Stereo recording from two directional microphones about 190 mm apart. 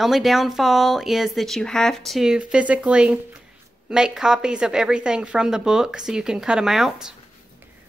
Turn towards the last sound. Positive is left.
turn(degrees=0)  # may be behind; listen again after turning